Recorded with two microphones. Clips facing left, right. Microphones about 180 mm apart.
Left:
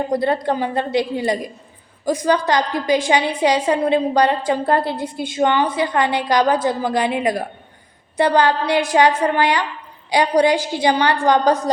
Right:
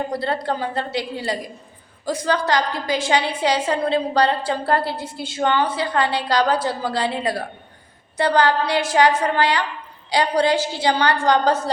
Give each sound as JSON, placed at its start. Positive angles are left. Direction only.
{"t": 0.1, "sound": "a woman's voice", "side_deg": 20}